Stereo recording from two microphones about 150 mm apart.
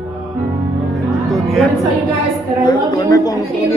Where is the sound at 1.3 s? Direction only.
Centre (ahead or behind).